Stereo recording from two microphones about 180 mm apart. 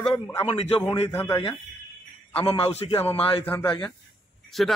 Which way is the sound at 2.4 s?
30° left (ahead or behind).